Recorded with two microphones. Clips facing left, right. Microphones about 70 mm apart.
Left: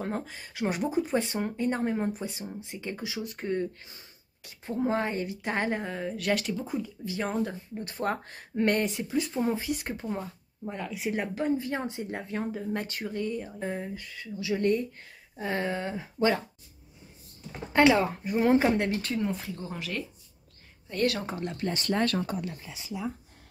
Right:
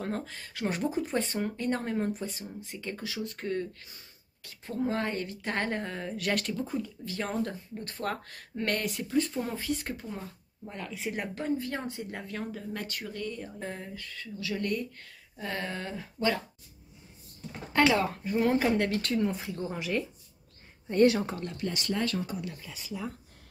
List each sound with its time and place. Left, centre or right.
0.0 s a woman's voice: centre
9.1 s speech: centre; by 10.7 s left
10.7 s speech: centre
17.8 s speech: left
18.9 s speech: centre
20.9 s a woman's voice: right
21.3 s a woman's voice: centre
21.5 s speech: left
22.4 s speech: left
22.7 s a woman's voice: centre